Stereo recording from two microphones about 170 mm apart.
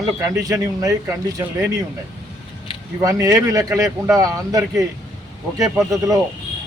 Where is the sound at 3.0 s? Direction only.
20° right (ahead or behind).